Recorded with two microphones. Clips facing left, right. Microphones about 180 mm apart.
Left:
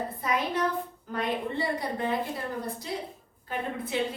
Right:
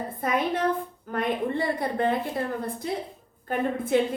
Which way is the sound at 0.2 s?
55° right (ahead or behind).